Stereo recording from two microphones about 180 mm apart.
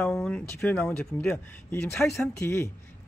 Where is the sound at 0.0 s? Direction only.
5° left (ahead or behind).